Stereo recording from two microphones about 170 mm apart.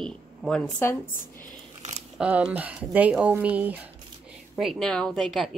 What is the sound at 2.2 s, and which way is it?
A woman's voice, 5° right (ahead or behind).